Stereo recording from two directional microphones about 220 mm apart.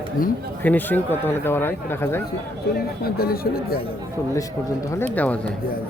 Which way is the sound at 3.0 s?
45° left (ahead or behind).